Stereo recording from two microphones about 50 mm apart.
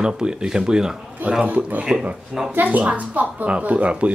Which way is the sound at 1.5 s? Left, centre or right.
Right.